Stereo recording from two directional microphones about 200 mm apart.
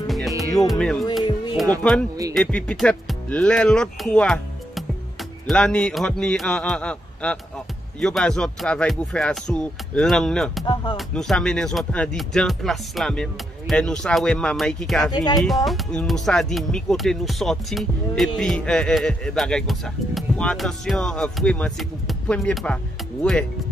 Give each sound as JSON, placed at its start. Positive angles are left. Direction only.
{"t": 0.0, "sound": "music", "side_deg": 0}
{"t": 0.7, "sound": "speech", "side_deg": 0}
{"t": 1.2, "sound": "music", "side_deg": 20}
{"t": 1.8, "sound": "speech", "side_deg": 5}
{"t": 10.6, "sound": "speech", "side_deg": 20}
{"t": 11.0, "sound": "speech", "side_deg": 0}
{"t": 15.0, "sound": "speech", "side_deg": 20}
{"t": 15.4, "sound": "speech", "side_deg": 0}